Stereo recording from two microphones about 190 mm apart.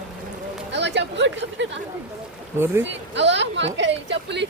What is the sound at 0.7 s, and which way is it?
Chatter, 65° right (ahead or behind).